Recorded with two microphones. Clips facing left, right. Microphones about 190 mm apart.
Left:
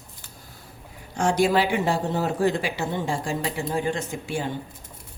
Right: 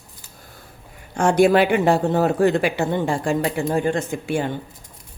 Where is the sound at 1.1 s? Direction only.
55° right (ahead or behind).